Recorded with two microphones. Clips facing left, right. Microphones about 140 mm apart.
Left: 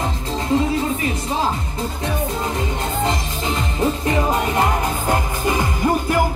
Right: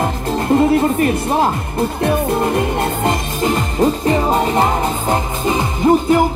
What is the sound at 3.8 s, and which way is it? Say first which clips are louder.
Music: right 4 dB; 35° right (ahead or behind).